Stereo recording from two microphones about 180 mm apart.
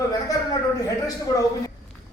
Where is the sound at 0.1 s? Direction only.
20° left (ahead or behind).